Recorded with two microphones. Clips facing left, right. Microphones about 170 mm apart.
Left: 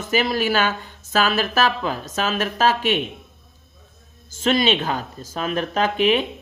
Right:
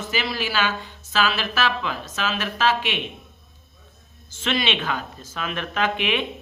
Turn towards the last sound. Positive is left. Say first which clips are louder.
# left 5 dB
turn(degrees=40)  # may be behind; listen again after turning